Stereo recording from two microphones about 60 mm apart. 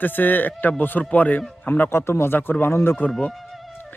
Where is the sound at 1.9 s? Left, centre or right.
Left.